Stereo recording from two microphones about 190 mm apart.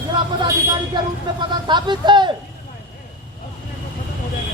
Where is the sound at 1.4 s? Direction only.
25° right (ahead or behind).